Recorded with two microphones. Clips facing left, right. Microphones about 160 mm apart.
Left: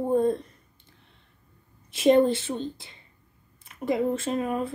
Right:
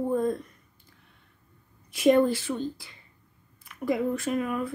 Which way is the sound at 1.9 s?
25° left (ahead or behind).